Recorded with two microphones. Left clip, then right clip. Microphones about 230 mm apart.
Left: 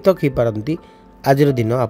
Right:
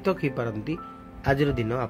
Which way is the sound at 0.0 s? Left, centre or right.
Left.